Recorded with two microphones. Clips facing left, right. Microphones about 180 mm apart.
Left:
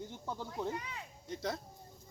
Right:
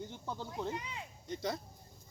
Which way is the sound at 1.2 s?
Centre (ahead or behind).